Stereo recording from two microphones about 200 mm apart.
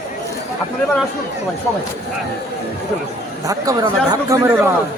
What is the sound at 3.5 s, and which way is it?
Speech, 20° right (ahead or behind).